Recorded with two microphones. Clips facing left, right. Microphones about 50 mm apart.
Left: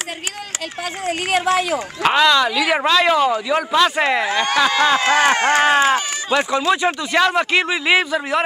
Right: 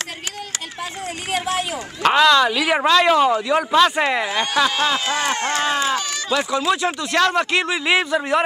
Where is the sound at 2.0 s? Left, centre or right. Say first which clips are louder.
Right 1 dB; centre.